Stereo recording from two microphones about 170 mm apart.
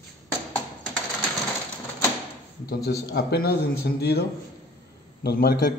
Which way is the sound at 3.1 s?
70° left (ahead or behind).